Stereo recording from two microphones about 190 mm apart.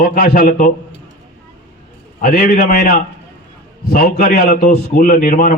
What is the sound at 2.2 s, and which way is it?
Speech, 40° left (ahead or behind).